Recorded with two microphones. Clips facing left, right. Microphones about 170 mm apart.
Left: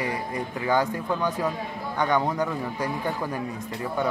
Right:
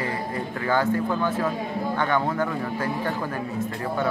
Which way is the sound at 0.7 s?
15° left (ahead or behind).